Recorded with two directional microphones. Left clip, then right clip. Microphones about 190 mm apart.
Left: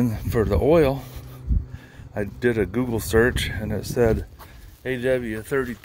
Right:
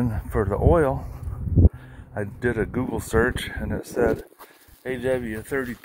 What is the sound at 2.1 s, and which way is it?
Speech, 50° left (ahead or behind).